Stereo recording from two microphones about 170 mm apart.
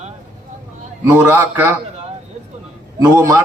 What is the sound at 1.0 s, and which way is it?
Speech, 10° right (ahead or behind).